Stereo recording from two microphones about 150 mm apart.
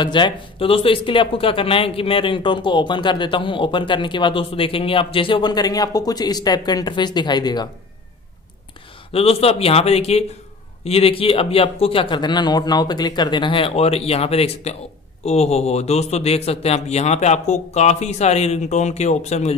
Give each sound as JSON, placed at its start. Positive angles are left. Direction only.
{"t": 0.0, "sound": "speech", "side_deg": 30}
{"t": 9.1, "sound": "speech", "side_deg": 40}